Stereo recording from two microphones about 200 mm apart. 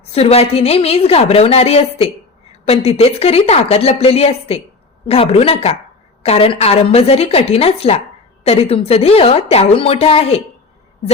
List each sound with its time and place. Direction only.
0.1 s a woman's voice: 30° left (ahead or behind)